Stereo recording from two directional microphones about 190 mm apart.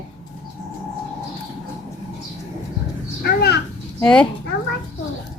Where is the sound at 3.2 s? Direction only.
55° left (ahead or behind).